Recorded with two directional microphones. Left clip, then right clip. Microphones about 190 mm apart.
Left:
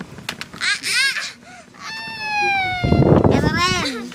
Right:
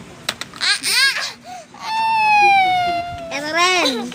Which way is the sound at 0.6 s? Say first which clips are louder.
Right 2 dB; 15° left (ahead or behind).